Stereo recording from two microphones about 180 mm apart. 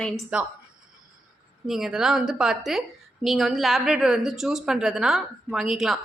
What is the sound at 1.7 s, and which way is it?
A woman's voice, centre (ahead or behind).